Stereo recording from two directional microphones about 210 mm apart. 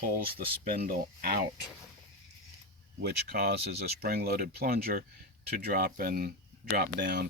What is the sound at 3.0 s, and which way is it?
Speech, 50° right (ahead or behind).